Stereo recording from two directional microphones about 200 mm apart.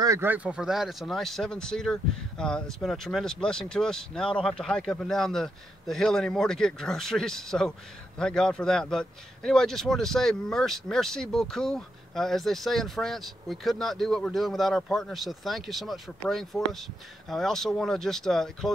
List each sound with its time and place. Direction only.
0.0 s speech: 15° right (ahead or behind); by 18.7 s centre (ahead or behind)